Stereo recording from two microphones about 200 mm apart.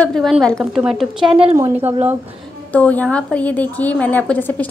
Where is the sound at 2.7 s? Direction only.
5° left (ahead or behind).